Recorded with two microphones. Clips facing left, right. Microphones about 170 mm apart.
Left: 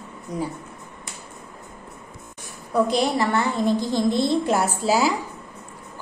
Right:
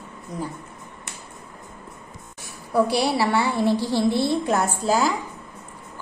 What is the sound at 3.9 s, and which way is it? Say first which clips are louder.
Speech: even; 15° left (ahead or behind).